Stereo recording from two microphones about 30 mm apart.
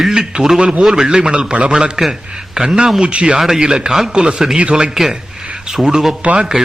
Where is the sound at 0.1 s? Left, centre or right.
Right.